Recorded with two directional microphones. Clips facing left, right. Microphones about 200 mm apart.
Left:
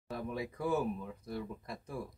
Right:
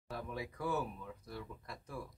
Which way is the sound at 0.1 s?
20° left (ahead or behind).